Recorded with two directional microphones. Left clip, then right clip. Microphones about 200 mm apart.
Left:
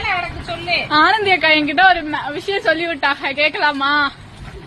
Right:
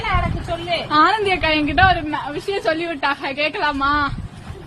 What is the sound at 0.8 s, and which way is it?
A woman's voice, 5° right (ahead or behind).